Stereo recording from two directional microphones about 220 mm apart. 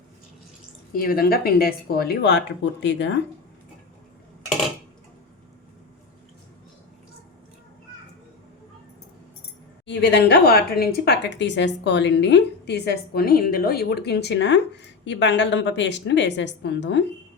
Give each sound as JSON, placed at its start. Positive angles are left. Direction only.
{"t": 0.9, "sound": "speech", "side_deg": 40}
{"t": 9.8, "sound": "speech", "side_deg": 50}